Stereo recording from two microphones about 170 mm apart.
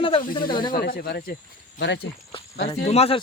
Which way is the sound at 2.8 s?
35° left (ahead or behind).